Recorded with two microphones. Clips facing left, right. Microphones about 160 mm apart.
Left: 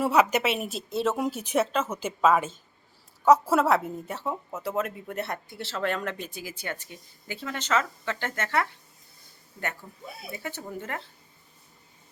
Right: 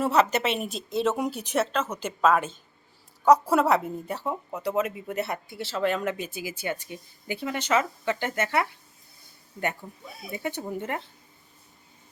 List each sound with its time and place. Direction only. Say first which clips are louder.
0.0 s speech: even; 10° left (ahead or behind); by 8.7 s 15° right (ahead or behind)
10.3 s speech: right 6 dB; 20° right (ahead or behind)